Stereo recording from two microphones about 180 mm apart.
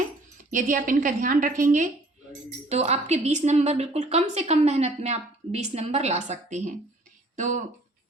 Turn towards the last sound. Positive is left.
turn(degrees=-45)  # may be behind; listen again after turning